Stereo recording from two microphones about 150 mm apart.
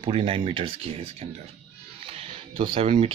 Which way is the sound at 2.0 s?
35° right (ahead or behind).